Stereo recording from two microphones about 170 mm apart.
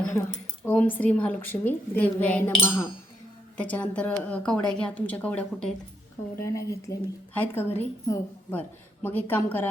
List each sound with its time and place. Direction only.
0.0 s a sound: 15° left (ahead or behind)
0.6 s a woman's voice: 10° left (ahead or behind)
6.4 s a woman's voice: 15° left (ahead or behind)